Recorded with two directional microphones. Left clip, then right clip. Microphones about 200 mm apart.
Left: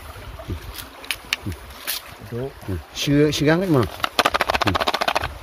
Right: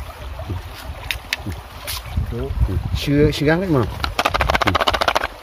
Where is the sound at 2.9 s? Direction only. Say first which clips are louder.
Right 1 dB; 10° left (ahead or behind).